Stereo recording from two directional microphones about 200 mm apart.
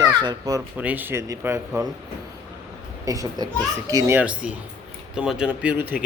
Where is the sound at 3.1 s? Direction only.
20° right (ahead or behind).